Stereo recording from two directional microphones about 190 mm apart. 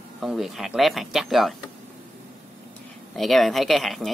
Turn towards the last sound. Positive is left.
turn(degrees=0)  # may be behind; listen again after turning